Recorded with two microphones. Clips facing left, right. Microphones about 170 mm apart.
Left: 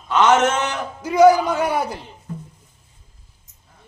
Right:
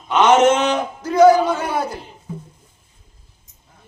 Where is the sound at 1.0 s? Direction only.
10° left (ahead or behind).